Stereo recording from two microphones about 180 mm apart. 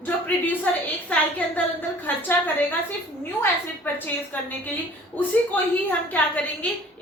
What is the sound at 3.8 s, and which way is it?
Speech, 10° left (ahead or behind).